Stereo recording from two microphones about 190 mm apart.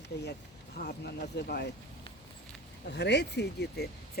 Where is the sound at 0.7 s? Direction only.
60° left (ahead or behind).